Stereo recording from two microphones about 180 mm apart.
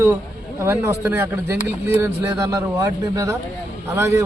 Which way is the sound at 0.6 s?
15° right (ahead or behind).